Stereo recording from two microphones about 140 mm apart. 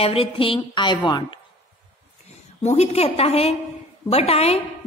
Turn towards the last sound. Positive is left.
turn(degrees=45)  # may be behind; listen again after turning